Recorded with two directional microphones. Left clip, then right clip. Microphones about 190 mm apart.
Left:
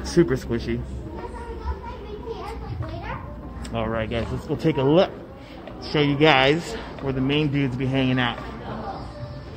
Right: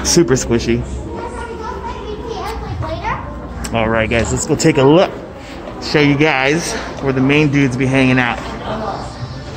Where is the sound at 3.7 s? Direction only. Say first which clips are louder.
Right 11 dB; 5° right (ahead or behind).